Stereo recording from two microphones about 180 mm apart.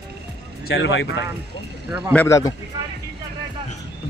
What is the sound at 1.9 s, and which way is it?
Speech, 10° right (ahead or behind).